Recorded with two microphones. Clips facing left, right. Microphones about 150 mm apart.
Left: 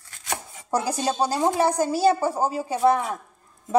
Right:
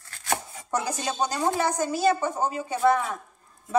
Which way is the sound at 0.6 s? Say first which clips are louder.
Left 4 dB; 30° left (ahead or behind).